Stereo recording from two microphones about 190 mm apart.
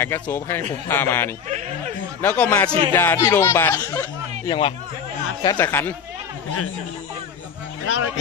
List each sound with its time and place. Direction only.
0.0 s speech: 15° left (ahead or behind)
7.8 s speech: 90° left